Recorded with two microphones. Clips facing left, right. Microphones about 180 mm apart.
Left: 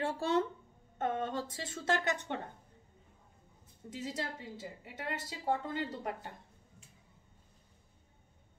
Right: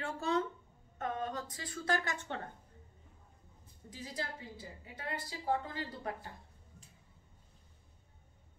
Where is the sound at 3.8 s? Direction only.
25° left (ahead or behind).